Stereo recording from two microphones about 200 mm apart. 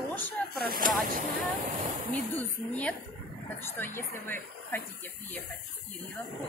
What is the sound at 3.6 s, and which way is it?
Speech, 10° left (ahead or behind).